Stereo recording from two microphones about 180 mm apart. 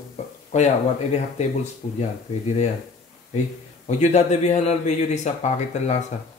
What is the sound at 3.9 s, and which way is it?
Speech, 40° left (ahead or behind).